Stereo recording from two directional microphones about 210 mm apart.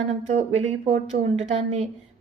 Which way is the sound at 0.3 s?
30° right (ahead or behind).